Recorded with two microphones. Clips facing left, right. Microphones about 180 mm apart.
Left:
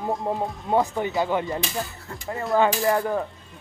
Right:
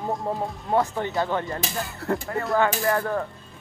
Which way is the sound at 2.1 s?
70° right (ahead or behind).